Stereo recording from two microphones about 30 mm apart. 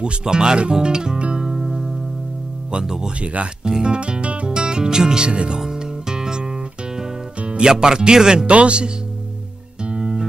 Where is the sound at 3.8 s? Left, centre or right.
Right.